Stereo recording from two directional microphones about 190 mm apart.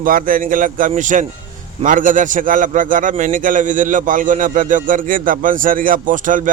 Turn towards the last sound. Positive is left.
turn(degrees=-45)  # may be behind; listen again after turning